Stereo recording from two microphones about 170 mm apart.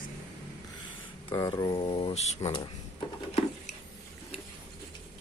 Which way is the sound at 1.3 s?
20° left (ahead or behind).